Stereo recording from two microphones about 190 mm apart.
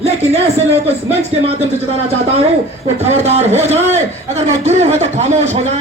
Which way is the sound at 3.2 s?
35° right (ahead or behind).